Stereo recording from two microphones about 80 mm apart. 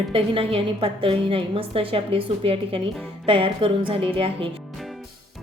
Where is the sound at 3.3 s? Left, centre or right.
Right.